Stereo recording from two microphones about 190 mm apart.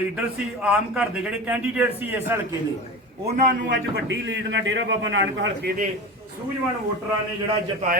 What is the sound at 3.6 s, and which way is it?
A man's voice, 70° right (ahead or behind).